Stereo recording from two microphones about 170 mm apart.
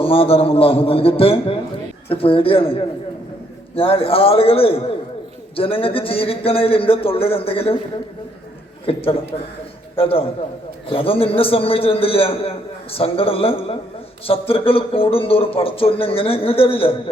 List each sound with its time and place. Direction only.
0.0 s a man's voice: 35° left (ahead or behind)
8.9 s a man's voice: 35° left (ahead or behind)